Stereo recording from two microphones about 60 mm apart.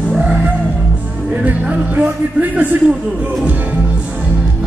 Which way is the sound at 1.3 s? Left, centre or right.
Right.